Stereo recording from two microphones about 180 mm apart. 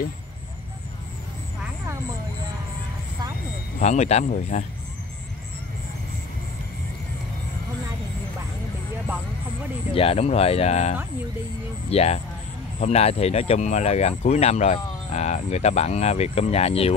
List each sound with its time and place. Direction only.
3.8 s speech: 40° left (ahead or behind)
9.9 s speech: 35° left (ahead or behind)